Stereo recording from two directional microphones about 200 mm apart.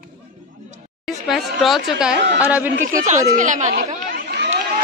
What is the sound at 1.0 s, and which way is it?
A woman's voice, centre (ahead or behind).